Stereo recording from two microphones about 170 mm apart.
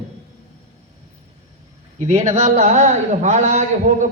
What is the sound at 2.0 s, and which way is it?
A man's voice, 45° right (ahead or behind).